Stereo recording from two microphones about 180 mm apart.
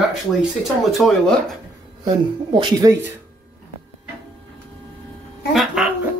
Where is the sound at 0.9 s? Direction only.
Centre (ahead or behind).